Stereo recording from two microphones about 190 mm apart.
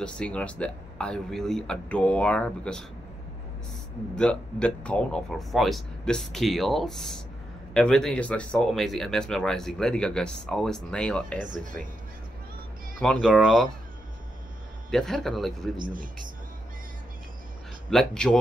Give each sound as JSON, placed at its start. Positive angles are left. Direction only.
{"t": 0.0, "sound": "speech", "side_deg": 5}
{"t": 4.1, "sound": "speech", "side_deg": 5}
{"t": 13.0, "sound": "speech", "side_deg": 0}
{"t": 14.9, "sound": "speech", "side_deg": 0}
{"t": 17.8, "sound": "speech", "side_deg": 5}